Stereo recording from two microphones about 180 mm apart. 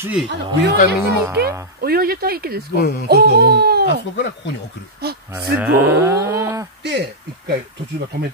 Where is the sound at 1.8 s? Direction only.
55° right (ahead or behind).